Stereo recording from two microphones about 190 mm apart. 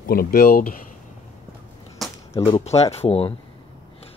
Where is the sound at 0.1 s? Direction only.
50° left (ahead or behind).